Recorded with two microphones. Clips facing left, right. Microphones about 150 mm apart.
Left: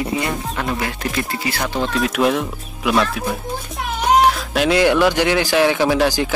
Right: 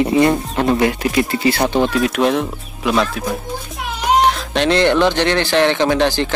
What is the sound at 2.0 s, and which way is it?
Speech, centre (ahead or behind).